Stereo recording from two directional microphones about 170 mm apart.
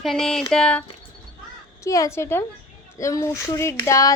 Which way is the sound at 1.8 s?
20° left (ahead or behind).